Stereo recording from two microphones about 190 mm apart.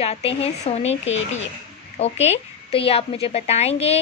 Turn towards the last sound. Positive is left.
turn(degrees=35)  # may be behind; listen again after turning